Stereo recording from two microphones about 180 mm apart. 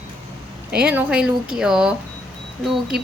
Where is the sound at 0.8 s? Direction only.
10° right (ahead or behind).